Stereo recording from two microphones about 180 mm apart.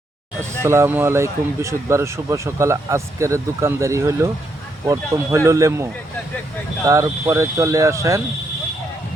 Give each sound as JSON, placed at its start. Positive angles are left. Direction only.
{"t": 0.6, "sound": "speech", "side_deg": -15}